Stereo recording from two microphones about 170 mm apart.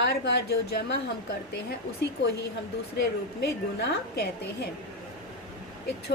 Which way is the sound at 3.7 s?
80° left.